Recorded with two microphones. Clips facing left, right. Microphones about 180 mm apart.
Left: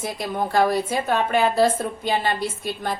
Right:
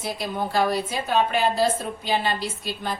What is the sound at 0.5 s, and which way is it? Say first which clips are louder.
A woman's voice: left 4 dB; 50° left (ahead or behind).